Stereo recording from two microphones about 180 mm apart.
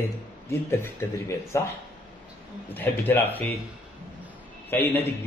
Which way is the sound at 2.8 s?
10° left (ahead or behind).